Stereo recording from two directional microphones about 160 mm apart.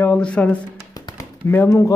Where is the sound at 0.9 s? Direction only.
20° left (ahead or behind).